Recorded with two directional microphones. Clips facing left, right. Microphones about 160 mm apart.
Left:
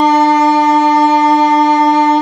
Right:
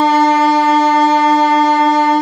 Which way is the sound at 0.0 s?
20° left (ahead or behind).